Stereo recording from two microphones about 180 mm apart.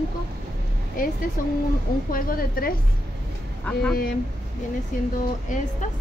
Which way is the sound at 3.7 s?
5° left (ahead or behind).